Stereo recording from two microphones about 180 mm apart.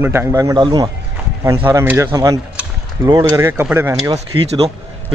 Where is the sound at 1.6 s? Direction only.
10° right (ahead or behind).